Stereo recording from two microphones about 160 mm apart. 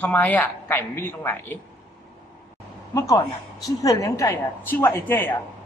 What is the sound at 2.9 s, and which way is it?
A woman's voice, 20° left (ahead or behind).